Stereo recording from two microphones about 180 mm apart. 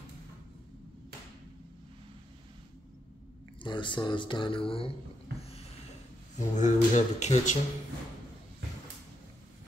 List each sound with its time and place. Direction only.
3.6 s speech: 25° left (ahead or behind)
6.3 s speech: 40° left (ahead or behind)